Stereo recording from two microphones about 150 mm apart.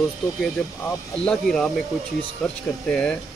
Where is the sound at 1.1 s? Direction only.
5° left (ahead or behind).